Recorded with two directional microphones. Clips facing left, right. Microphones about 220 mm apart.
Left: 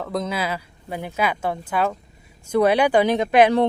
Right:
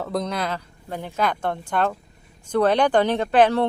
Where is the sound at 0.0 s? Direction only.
Centre (ahead or behind).